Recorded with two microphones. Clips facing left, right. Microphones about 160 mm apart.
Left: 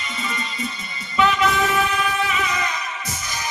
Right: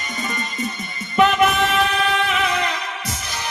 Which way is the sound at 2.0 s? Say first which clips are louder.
Right 3 dB; 65° right (ahead or behind).